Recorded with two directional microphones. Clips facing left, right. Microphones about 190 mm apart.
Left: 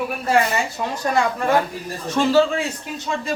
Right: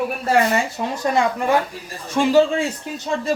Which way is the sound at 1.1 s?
20° right (ahead or behind).